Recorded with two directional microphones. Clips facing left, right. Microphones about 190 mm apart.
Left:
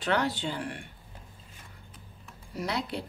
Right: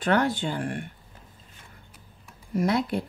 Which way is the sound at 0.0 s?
50° right (ahead or behind).